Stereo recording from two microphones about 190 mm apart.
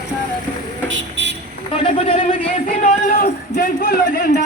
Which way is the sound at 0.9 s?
75° right (ahead or behind).